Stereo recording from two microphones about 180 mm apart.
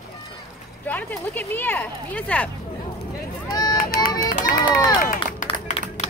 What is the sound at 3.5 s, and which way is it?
Run, 20° left (ahead or behind).